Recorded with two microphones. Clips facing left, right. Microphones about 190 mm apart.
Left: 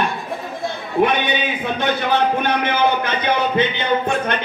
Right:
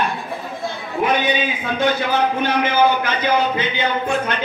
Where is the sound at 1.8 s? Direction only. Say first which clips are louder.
Even; 60° left (ahead or behind).